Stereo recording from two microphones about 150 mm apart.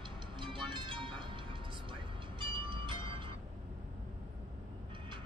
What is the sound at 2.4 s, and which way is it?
Music, 35° right (ahead or behind).